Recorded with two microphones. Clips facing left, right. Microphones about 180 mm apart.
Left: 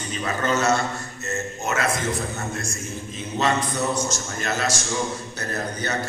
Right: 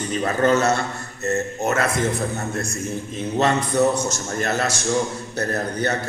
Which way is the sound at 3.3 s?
60° right (ahead or behind).